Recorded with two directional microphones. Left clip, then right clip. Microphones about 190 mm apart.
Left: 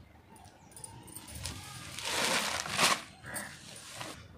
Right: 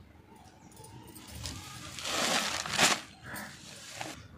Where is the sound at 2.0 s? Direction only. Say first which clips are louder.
Even; 15° left (ahead or behind).